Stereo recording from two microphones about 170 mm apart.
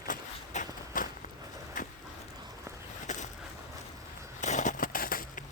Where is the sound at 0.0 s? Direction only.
50° left (ahead or behind).